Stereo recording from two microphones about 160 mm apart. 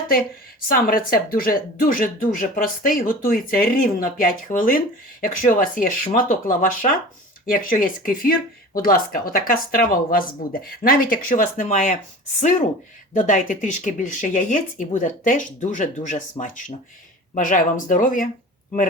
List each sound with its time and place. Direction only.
0.7 s speech: 65° left (ahead or behind)